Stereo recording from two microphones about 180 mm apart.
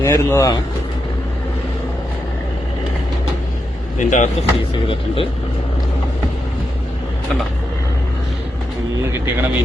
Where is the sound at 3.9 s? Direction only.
45° left (ahead or behind).